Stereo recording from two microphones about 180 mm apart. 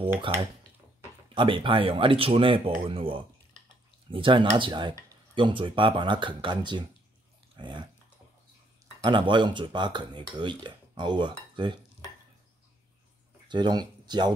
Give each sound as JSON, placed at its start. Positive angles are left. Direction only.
{"t": 0.2, "sound": "speech", "side_deg": -25}
{"t": 9.0, "sound": "speech", "side_deg": -25}
{"t": 13.5, "sound": "speech", "side_deg": -25}